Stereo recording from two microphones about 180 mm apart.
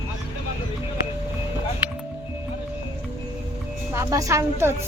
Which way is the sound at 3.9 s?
15° right (ahead or behind).